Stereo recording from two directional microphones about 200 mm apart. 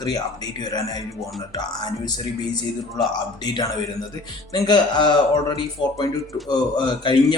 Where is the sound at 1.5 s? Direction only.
20° left (ahead or behind).